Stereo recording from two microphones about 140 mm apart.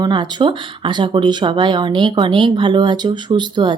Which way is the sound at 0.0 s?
30° right (ahead or behind).